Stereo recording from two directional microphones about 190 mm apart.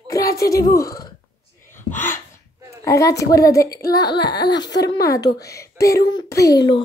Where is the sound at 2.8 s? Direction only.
15° left (ahead or behind).